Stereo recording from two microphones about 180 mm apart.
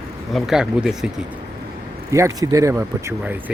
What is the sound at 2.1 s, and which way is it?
Speech, 15° right (ahead or behind).